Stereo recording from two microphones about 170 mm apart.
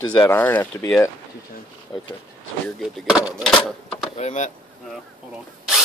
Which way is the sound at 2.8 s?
5° right (ahead or behind).